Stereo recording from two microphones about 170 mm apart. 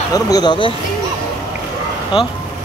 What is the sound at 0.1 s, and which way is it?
Speech, 20° left (ahead or behind).